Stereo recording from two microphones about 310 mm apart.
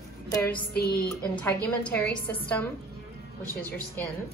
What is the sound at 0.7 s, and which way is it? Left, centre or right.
Music, left.